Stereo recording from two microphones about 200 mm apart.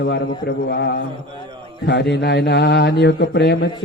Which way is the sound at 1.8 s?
55° left (ahead or behind).